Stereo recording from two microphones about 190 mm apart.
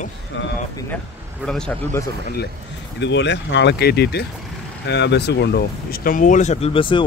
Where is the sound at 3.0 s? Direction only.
65° left (ahead or behind); by 7.0 s 25° left (ahead or behind).